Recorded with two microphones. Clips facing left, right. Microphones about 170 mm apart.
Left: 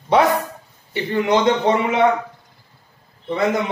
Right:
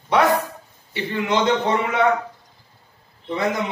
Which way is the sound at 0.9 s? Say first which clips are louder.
Left 5 dB; 45° left (ahead or behind).